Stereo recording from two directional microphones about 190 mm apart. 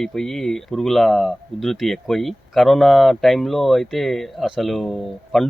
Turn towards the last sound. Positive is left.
turn(degrees=0)  # may be behind; listen again after turning